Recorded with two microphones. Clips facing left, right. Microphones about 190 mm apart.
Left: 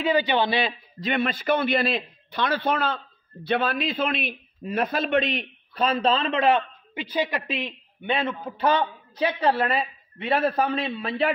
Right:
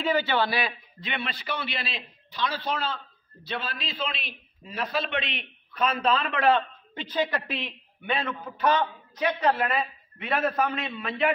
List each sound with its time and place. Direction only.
0.0 s a man's voice: 15° left (ahead or behind)
0.9 s a man's voice: 40° left (ahead or behind)